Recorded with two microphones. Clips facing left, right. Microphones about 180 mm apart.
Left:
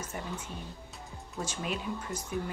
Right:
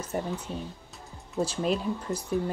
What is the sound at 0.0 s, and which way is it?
Speech, 35° right (ahead or behind).